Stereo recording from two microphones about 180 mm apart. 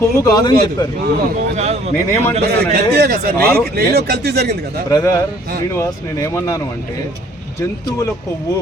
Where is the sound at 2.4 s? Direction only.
60° right (ahead or behind).